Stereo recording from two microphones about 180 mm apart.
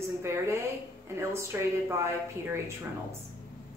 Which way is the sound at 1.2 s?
15° right (ahead or behind).